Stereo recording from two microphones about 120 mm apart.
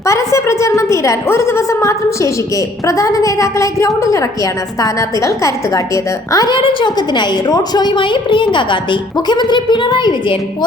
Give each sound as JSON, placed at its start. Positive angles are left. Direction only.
{"t": 0.0, "sound": "a woman's voice", "side_deg": 25}
{"t": 6.6, "sound": "a woman's voice", "side_deg": 45}